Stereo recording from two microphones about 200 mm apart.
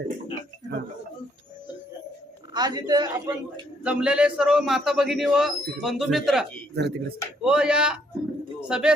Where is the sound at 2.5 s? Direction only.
20° right (ahead or behind).